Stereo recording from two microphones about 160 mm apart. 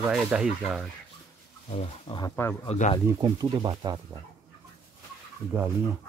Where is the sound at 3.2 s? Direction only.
30° right (ahead or behind).